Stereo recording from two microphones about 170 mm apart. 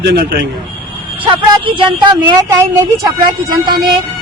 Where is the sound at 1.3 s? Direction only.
30° right (ahead or behind).